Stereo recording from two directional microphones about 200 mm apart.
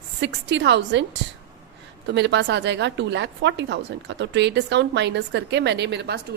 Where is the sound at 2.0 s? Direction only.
60° right (ahead or behind).